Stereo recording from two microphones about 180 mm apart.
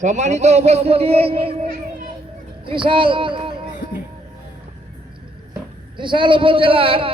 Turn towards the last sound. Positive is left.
turn(degrees=-30)  # may be behind; listen again after turning